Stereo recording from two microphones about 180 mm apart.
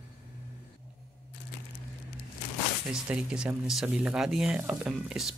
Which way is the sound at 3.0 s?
5° right (ahead or behind).